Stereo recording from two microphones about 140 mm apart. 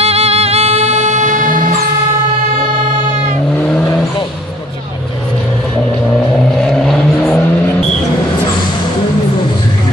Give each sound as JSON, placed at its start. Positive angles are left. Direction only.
{"t": 0.0, "sound": "music", "side_deg": -45}
{"t": 3.6, "sound": "vehicle", "side_deg": 5}
{"t": 6.5, "sound": "vehicle", "side_deg": 5}